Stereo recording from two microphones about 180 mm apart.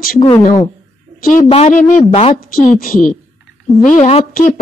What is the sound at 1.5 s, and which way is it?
Speech, 40° left (ahead or behind).